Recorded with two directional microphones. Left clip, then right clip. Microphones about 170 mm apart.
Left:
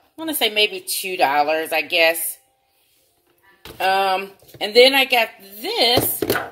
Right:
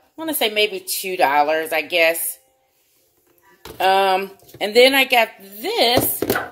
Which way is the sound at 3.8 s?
25° right (ahead or behind).